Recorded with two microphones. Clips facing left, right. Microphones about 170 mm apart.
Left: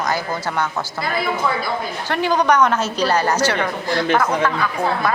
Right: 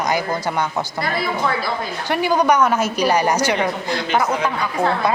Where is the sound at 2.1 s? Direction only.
10° right (ahead or behind).